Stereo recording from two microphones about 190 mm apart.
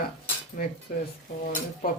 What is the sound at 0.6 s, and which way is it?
Speech, 45° left (ahead or behind).